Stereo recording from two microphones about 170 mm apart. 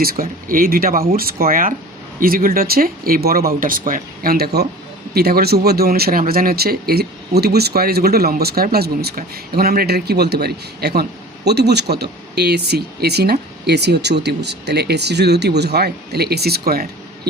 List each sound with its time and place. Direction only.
0.0 s speech: 55° right (ahead or behind)